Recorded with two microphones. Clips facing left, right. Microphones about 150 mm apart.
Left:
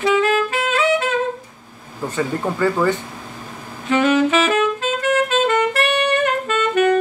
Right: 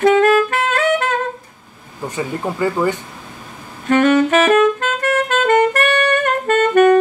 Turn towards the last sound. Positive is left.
turn(degrees=-50)  # may be behind; listen again after turning